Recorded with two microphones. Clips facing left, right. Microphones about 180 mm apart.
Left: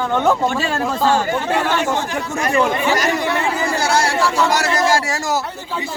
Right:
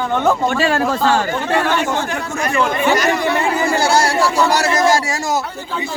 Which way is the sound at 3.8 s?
30° right (ahead or behind).